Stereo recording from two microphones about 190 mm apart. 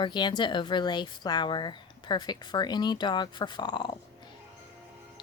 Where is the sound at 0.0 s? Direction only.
25° left (ahead or behind).